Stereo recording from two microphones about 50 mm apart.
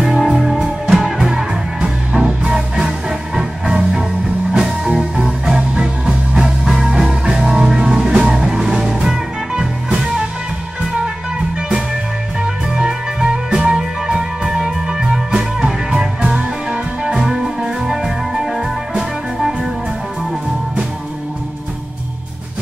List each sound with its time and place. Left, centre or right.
0.0 s music: centre
12.4 s music: centre